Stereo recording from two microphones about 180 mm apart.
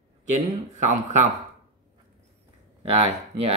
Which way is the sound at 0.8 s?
40° right (ahead or behind).